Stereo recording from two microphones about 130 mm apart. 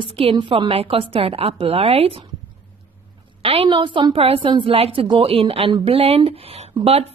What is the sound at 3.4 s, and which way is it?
Speech, 40° right (ahead or behind).